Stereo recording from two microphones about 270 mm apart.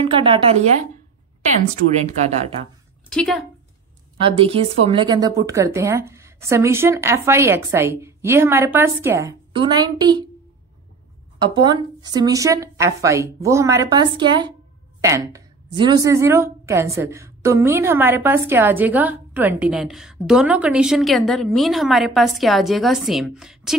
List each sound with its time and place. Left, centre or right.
0.0 s speech: centre
2.0 s speech: right
3.1 s a woman's voice: centre
4.3 s speech: right
11.3 s a woman's voice: centre